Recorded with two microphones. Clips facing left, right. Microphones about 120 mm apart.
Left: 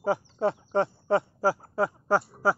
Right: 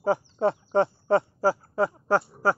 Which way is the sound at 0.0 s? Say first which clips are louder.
Right 2 dB; centre (ahead or behind).